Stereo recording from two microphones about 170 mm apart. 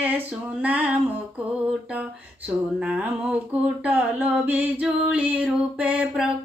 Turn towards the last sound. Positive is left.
turn(degrees=-5)  # may be behind; listen again after turning